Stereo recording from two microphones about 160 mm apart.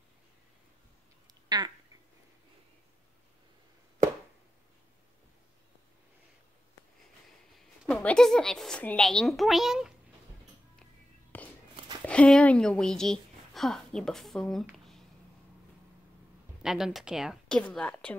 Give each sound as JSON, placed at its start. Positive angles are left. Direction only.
{"t": 1.2, "sound": "a sound", "side_deg": -25}
{"t": 7.5, "sound": "speech", "side_deg": 0}
{"t": 11.3, "sound": "walk", "side_deg": 10}
{"t": 12.1, "sound": "a woman's voice", "side_deg": 5}
{"t": 16.6, "sound": "speech", "side_deg": 0}